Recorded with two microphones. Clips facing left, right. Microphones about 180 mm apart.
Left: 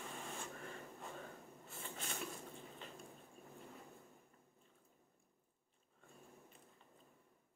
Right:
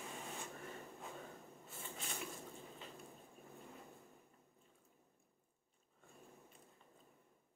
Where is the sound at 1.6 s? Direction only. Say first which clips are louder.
Left 1 dB; centre (ahead or behind).